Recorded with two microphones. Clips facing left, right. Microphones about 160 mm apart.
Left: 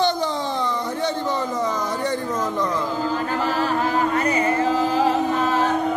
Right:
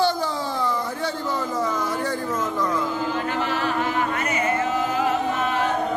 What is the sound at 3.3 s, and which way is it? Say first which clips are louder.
Singing: left 2 dB; 40° left (ahead or behind).